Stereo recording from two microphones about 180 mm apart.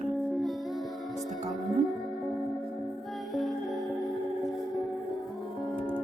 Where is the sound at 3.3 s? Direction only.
Centre (ahead or behind).